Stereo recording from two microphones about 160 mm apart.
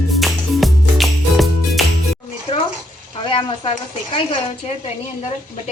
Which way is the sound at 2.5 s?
30° left (ahead or behind).